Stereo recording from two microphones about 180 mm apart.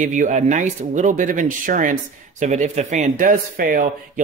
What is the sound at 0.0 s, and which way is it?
Speech, 45° right (ahead or behind).